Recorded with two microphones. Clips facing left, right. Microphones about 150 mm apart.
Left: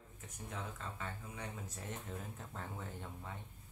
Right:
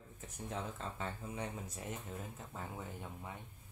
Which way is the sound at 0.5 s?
30° right (ahead or behind).